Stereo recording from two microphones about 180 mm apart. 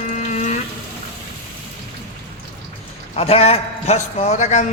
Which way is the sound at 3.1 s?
35° left (ahead or behind).